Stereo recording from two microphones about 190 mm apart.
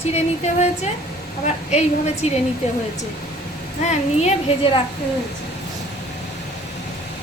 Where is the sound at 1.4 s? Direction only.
35° left (ahead or behind).